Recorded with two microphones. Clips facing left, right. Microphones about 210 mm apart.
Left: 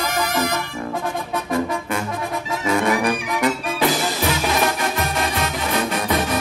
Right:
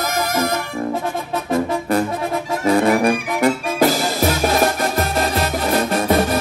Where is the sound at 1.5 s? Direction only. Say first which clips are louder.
Right 5 dB; 35° right (ahead or behind).